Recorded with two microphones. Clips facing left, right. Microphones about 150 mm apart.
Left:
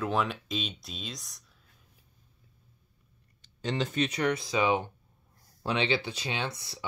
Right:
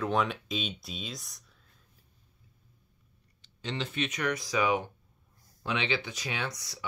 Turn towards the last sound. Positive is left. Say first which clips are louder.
# left 2 dB
turn(degrees=25)  # may be behind; listen again after turning